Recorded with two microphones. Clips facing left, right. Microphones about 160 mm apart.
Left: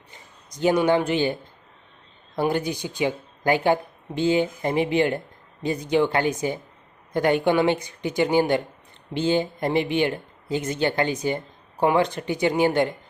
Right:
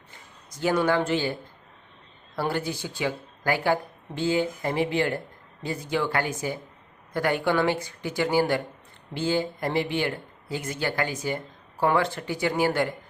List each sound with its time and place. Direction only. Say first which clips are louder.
0.1 s speech: left 2 dB; 20° left (ahead or behind)